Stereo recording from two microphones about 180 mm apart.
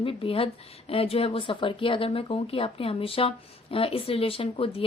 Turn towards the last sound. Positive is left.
turn(degrees=30)  # may be behind; listen again after turning